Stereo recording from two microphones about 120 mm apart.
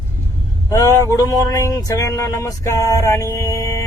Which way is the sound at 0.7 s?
25° left (ahead or behind).